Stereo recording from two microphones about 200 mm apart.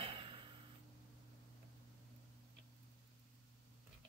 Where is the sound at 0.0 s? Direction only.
25° right (ahead or behind).